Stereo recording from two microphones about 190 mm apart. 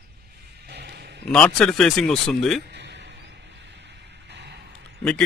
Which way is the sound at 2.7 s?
65° right (ahead or behind).